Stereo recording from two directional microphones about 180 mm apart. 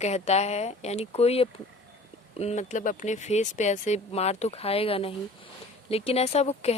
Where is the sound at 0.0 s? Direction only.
35° left (ahead or behind).